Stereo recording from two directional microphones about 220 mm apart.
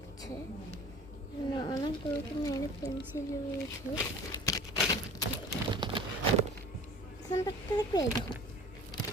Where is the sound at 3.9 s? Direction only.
15° left (ahead or behind).